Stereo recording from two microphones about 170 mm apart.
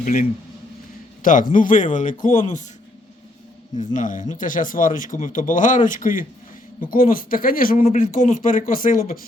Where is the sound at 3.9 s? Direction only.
50° left (ahead or behind).